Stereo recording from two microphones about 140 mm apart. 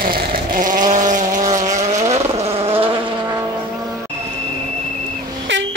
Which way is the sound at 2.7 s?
40° right (ahead or behind).